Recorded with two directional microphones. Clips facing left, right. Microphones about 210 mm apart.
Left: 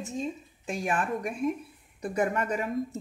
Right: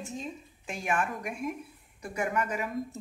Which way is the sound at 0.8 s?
35° left (ahead or behind).